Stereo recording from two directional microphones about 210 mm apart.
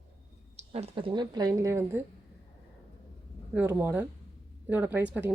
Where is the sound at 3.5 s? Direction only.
10° right (ahead or behind).